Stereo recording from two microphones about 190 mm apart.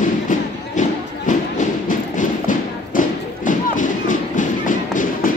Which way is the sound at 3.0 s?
45° left (ahead or behind).